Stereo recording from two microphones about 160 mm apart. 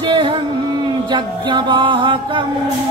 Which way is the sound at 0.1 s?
35° right (ahead or behind).